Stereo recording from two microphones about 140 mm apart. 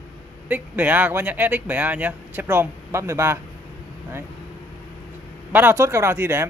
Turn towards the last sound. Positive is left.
turn(degrees=-15)  # may be behind; listen again after turning